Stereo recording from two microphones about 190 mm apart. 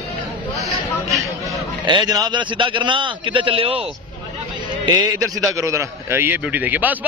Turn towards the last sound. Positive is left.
turn(degrees=-10)  # may be behind; listen again after turning